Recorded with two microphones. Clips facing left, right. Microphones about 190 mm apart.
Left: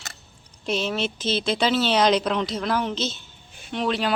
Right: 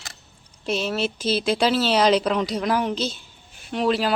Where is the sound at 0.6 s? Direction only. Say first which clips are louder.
Right 1 dB; 5° right (ahead or behind).